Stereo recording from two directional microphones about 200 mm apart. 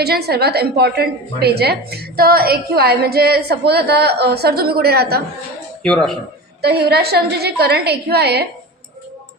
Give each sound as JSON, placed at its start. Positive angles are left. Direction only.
{"t": 0.0, "sound": "a woman's voice", "side_deg": -50}
{"t": 5.8, "sound": "speech", "side_deg": 5}
{"t": 6.6, "sound": "a woman's voice", "side_deg": -55}